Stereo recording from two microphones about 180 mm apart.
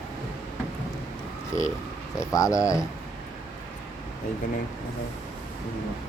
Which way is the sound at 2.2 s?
20° left (ahead or behind).